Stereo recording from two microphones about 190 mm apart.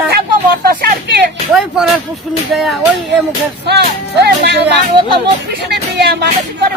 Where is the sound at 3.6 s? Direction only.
60° right (ahead or behind).